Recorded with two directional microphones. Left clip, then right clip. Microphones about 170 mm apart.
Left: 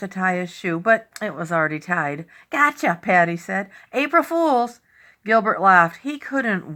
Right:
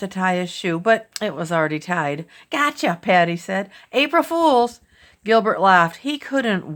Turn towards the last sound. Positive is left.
turn(degrees=-35)  # may be behind; listen again after turning